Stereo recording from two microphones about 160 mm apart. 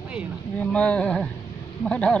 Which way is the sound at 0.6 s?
5° left (ahead or behind).